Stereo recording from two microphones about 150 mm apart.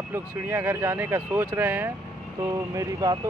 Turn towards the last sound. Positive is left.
turn(degrees=-20)  # may be behind; listen again after turning